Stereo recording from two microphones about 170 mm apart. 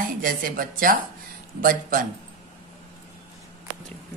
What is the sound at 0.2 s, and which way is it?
Speech, 55° right (ahead or behind).